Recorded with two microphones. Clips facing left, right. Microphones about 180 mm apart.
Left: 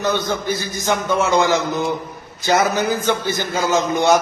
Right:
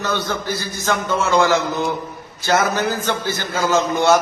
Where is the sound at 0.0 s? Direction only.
15° left (ahead or behind).